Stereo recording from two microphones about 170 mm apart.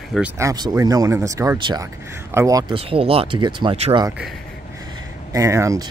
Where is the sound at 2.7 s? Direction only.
35° right (ahead or behind).